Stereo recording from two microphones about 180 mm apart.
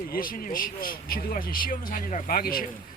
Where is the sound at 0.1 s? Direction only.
55° left (ahead or behind).